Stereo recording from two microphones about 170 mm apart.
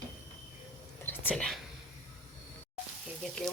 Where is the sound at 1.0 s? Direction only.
10° left (ahead or behind).